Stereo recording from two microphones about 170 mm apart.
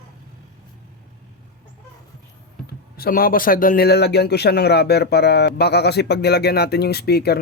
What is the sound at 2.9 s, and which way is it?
A man's voice, 60° left (ahead or behind).